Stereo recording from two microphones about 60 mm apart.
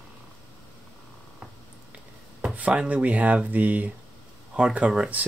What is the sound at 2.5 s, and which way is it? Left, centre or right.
Speech, right.